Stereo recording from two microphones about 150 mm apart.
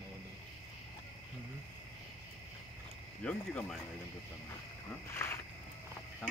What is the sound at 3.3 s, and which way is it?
Speech, 5° left (ahead or behind).